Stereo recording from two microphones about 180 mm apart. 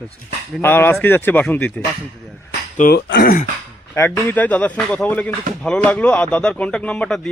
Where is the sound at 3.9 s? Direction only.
15° left (ahead or behind).